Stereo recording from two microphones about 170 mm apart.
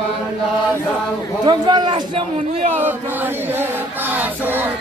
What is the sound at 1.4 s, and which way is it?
Speech, 25° right (ahead or behind).